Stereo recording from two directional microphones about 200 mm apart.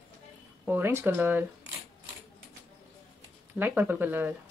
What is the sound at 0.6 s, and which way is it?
Speech, 10° right (ahead or behind).